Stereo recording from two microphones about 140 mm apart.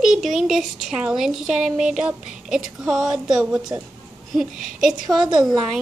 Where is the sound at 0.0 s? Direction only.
5° right (ahead or behind).